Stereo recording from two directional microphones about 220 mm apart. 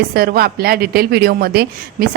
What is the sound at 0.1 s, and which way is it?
Speech, 45° right (ahead or behind).